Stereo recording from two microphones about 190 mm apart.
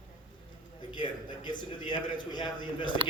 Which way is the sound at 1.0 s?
25° left (ahead or behind).